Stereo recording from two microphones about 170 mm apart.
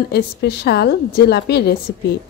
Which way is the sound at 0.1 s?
75° left (ahead or behind).